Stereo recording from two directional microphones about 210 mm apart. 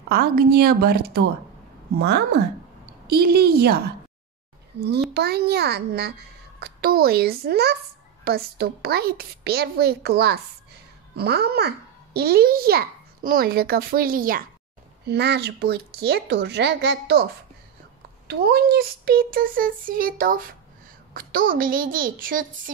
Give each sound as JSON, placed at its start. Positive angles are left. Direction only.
{"t": 0.1, "sound": "a child's voice", "side_deg": -45}
{"t": 15.0, "sound": "a child's voice", "side_deg": -55}